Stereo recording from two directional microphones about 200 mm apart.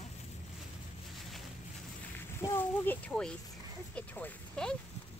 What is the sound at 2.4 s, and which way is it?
Speech, 15° left (ahead or behind).